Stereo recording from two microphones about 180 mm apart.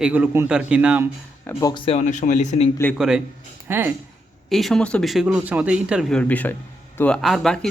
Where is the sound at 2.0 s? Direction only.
45° left (ahead or behind).